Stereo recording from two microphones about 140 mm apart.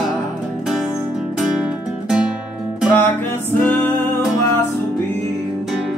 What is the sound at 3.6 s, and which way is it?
Music, 15° left (ahead or behind).